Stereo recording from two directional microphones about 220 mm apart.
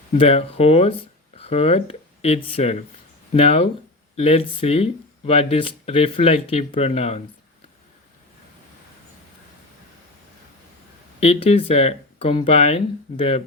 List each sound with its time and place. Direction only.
0.1 s speech: 25° left (ahead or behind)
11.2 s speech: 30° left (ahead or behind)